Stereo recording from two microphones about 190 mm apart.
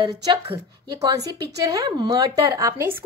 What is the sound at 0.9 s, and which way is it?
A woman's voice, 20° right (ahead or behind).